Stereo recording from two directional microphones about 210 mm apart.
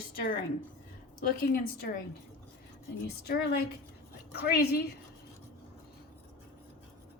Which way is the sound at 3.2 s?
50° left (ahead or behind).